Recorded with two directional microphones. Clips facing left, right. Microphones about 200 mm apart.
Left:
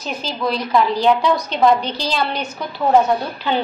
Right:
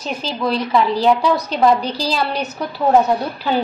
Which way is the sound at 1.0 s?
5° right (ahead or behind).